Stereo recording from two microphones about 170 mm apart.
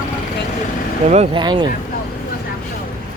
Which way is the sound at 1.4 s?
25° right (ahead or behind).